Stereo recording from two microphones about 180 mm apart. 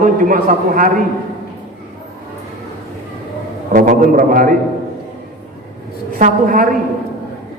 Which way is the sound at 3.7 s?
50° right (ahead or behind).